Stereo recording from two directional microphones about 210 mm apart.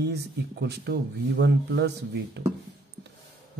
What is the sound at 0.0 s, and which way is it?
Speech, 50° right (ahead or behind).